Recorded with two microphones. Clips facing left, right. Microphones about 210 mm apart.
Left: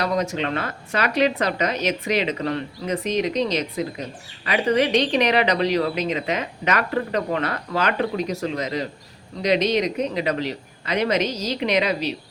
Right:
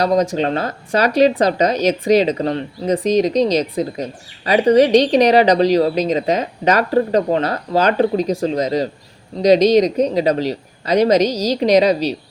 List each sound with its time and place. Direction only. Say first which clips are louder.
0.0 s speech: right 7 dB; 35° right (ahead or behind)